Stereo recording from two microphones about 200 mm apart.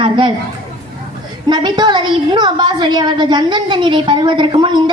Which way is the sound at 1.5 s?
20° right (ahead or behind).